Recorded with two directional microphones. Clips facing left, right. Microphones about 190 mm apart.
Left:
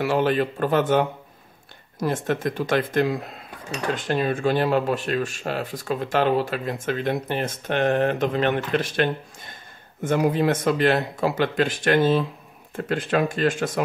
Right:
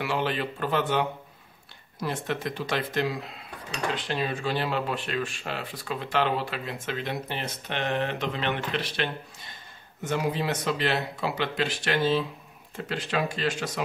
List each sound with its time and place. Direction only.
0.0 s speech: 45° left (ahead or behind)